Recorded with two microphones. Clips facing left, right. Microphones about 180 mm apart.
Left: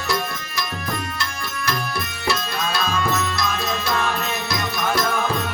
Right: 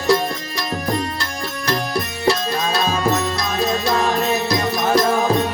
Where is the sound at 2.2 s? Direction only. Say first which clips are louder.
Right 5 dB; 35° right (ahead or behind).